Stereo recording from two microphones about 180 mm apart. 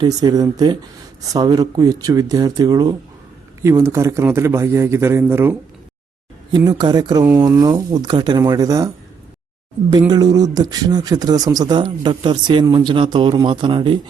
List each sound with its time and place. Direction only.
0.0 s a man's voice: 20° right (ahead or behind)
6.7 s speech: 25° right (ahead or behind)
10.1 s speech: 20° right (ahead or behind)